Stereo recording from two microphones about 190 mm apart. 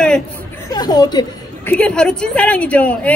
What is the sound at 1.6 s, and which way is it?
A woman's voice, 5° left (ahead or behind).